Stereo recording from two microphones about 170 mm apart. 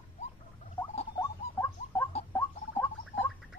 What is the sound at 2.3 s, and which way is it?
Rodents, 10° left (ahead or behind).